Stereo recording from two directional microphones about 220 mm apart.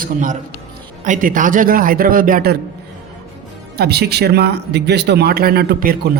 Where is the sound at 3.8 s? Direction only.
50° right (ahead or behind).